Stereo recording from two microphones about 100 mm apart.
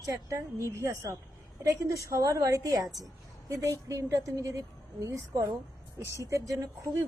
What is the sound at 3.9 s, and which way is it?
A woman's voice, 30° right (ahead or behind).